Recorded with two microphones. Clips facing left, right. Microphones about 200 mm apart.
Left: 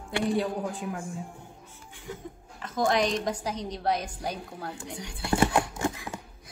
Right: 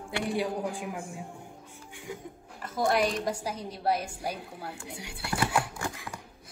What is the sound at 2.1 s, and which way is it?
A woman's voice, 10° right (ahead or behind).